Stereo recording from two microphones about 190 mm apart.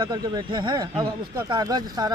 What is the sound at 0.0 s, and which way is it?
Speech, 20° right (ahead or behind).